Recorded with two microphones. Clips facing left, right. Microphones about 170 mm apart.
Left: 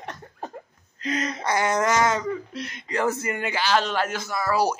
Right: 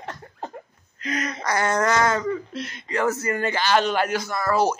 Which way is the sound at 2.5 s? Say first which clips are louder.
Right 1 dB; 30° left (ahead or behind).